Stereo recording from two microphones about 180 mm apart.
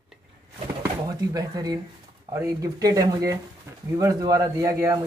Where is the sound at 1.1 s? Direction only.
20° right (ahead or behind).